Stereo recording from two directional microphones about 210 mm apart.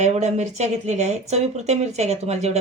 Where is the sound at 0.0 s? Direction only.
35° right (ahead or behind).